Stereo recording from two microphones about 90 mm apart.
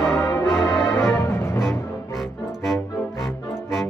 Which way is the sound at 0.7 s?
35° left (ahead or behind).